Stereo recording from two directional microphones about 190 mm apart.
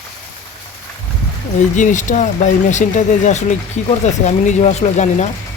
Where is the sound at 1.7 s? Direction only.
40° left (ahead or behind).